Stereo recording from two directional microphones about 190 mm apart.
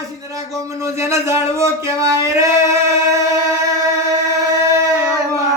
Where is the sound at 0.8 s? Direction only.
15° right (ahead or behind).